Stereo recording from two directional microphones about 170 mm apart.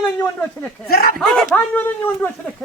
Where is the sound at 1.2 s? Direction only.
Centre (ahead or behind).